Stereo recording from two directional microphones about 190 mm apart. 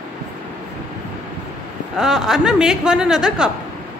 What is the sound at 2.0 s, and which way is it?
A man's voice, 5° right (ahead or behind).